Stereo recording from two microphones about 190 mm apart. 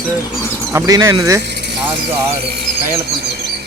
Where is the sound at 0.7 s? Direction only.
20° right (ahead or behind).